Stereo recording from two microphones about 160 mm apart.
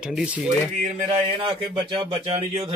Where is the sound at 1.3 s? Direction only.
30° right (ahead or behind).